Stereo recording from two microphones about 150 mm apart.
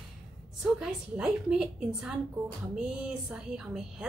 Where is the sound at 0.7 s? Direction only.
5° right (ahead or behind).